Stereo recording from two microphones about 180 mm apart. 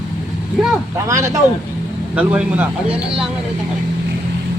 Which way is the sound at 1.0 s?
15° right (ahead or behind).